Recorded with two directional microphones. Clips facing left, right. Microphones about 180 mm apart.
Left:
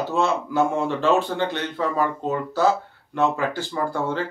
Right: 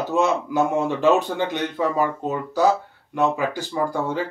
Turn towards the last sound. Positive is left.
turn(degrees=-15)  # may be behind; listen again after turning